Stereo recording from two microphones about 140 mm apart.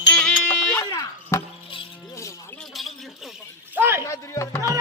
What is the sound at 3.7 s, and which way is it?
Speech, 15° right (ahead or behind).